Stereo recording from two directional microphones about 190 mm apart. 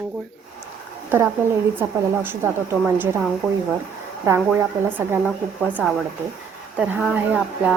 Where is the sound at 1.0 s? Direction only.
10° right (ahead or behind).